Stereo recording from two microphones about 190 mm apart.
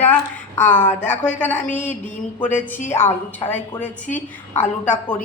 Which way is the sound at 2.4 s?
40° left (ahead or behind).